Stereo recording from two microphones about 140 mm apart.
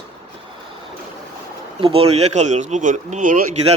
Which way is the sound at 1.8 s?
45° right (ahead or behind).